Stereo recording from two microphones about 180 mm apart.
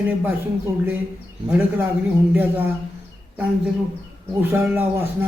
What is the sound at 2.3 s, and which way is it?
Speech, 10° right (ahead or behind).